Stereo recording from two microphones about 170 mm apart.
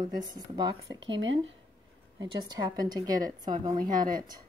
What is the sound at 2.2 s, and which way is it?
A woman's voice, 20° right (ahead or behind).